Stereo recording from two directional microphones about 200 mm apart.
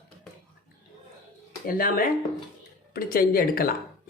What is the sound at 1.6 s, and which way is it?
Speech, 45° left (ahead or behind).